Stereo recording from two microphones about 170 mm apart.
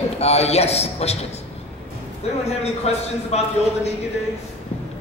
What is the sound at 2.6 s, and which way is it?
A man's voice, 40° left (ahead or behind).